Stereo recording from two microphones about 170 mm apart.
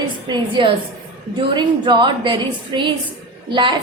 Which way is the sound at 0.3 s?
30° right (ahead or behind).